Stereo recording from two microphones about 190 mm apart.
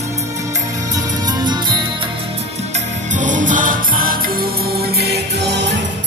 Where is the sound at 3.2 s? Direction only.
40° right (ahead or behind).